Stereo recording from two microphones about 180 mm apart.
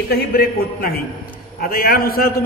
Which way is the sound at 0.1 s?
55° left (ahead or behind).